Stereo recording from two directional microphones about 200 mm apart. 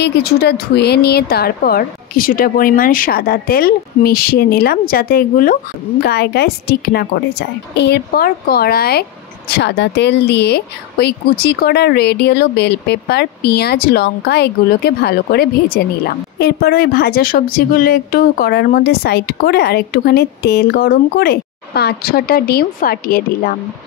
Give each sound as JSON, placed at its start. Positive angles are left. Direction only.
{"t": 0.0, "sound": "speech", "side_deg": 55}